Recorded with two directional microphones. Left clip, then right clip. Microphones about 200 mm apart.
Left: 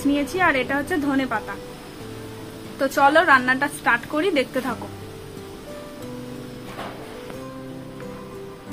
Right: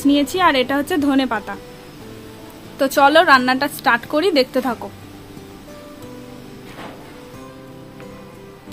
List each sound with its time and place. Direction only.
0.1 s a woman's voice: 60° right (ahead or behind)
2.8 s a woman's voice: 55° right (ahead or behind)